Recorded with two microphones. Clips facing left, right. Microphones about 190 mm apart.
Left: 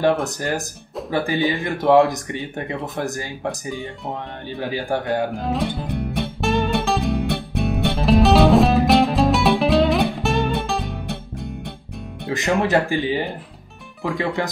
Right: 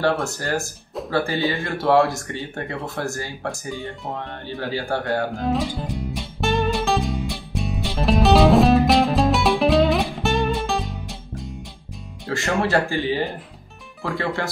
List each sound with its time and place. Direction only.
0.0 s speech: 20° left (ahead or behind)
5.9 s music: 60° left (ahead or behind)
6.4 s music: centre (ahead or behind)
7.0 s music: 60° left (ahead or behind)
8.0 s music: centre (ahead or behind)
10.8 s music: 60° left (ahead or behind)
12.3 s speech: 20° left (ahead or behind)